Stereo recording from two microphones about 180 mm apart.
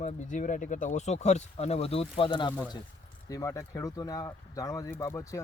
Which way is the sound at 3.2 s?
15° left (ahead or behind).